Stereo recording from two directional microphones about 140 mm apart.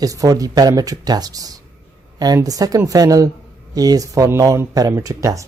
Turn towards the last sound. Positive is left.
turn(degrees=-20)  # may be behind; listen again after turning